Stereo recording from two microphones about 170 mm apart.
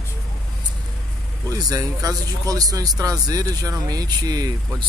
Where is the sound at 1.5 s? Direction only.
20° right (ahead or behind).